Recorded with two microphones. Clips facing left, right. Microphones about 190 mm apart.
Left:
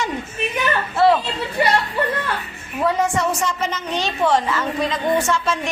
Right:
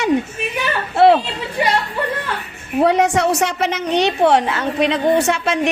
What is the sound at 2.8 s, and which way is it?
A woman's voice, 75° right (ahead or behind).